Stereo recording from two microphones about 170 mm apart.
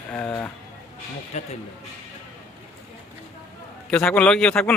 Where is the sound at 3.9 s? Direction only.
5° left (ahead or behind).